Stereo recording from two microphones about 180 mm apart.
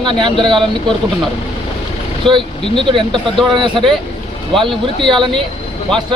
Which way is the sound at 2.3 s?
Centre (ahead or behind).